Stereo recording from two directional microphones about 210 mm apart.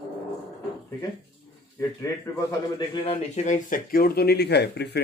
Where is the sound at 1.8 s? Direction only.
15° left (ahead or behind).